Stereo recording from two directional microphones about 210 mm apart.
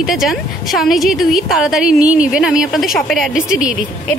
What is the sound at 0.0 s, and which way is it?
A woman's voice, centre (ahead or behind).